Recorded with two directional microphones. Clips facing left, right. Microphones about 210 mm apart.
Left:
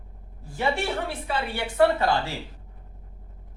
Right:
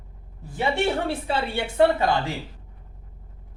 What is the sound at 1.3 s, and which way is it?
Speech, 20° right (ahead or behind).